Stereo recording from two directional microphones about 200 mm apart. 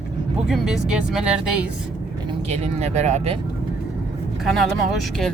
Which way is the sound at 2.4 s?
35° right (ahead or behind).